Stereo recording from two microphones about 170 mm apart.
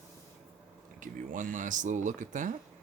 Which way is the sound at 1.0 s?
50° right (ahead or behind).